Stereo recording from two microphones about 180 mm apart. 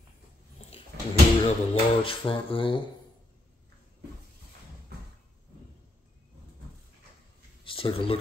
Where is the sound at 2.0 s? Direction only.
30° left (ahead or behind).